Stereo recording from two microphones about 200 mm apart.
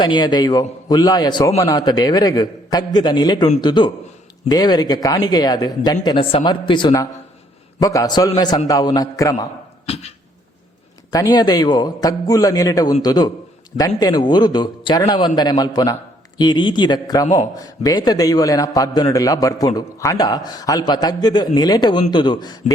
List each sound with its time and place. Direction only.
0.0 s a man's voice: 20° left (ahead or behind)
9.8 s dog: 30° left (ahead or behind)
11.1 s a man's voice: 20° left (ahead or behind)